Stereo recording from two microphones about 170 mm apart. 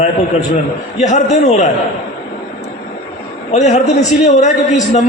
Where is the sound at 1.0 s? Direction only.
45° left (ahead or behind).